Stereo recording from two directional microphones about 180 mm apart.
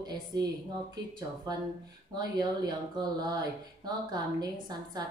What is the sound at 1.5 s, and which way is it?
Speech, 20° right (ahead or behind).